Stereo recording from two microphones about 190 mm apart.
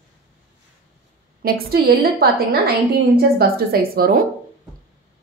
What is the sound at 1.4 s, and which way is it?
Speech, 55° right (ahead or behind).